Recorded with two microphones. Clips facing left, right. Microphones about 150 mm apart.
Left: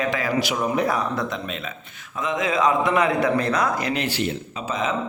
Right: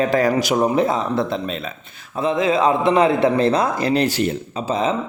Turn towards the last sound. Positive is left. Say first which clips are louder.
# right 5 dB
turn(degrees=-30)  # may be behind; listen again after turning